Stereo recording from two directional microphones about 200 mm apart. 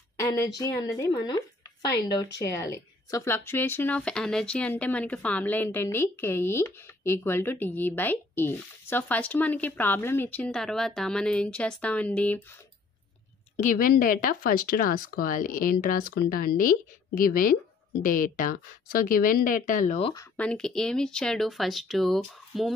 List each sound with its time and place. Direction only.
0.2 s speech: 15° left (ahead or behind)
13.6 s speech: 45° left (ahead or behind)
20.0 s speech: 25° left (ahead or behind)
20.3 s speech: 5° left (ahead or behind)